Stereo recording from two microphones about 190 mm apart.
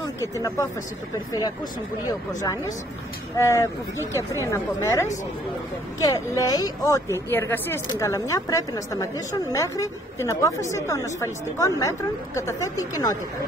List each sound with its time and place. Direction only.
0.0 s speech: 20° left (ahead or behind)
2.0 s a woman's voice: 20° left (ahead or behind)